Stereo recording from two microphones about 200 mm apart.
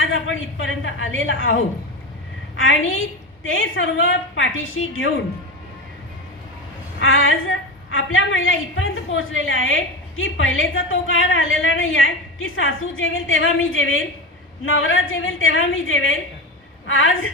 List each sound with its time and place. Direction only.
0.0 s a woman's voice: 80° left
7.0 s a woman's voice: 80° left